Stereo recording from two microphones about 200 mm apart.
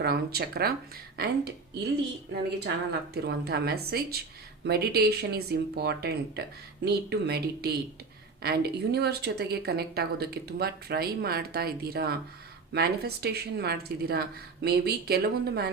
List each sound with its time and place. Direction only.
0.0 s a woman's voice: 50° right (ahead or behind)
3.2 s a woman's voice: 55° right (ahead or behind)